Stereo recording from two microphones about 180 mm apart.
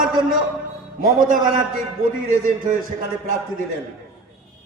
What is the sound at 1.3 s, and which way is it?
Speech, 50° right (ahead or behind).